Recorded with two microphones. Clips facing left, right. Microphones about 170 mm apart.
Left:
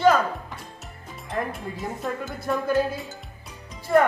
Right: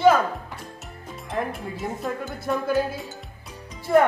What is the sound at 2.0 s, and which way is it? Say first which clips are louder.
Music: right 1 dB; centre (ahead or behind).